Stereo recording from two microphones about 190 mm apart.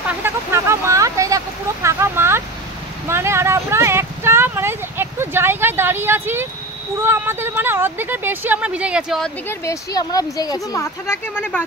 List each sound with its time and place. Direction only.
0.2 s a sound: 15° right (ahead or behind)
7.0 s speech: 10° right (ahead or behind)
9.5 s speech: 15° left (ahead or behind)